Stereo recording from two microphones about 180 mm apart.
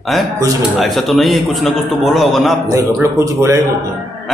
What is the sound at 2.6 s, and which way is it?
Speech, 15° right (ahead or behind).